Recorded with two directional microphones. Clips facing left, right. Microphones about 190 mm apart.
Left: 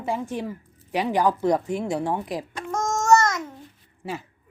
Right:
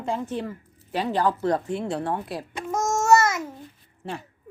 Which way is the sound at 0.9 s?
15° left (ahead or behind).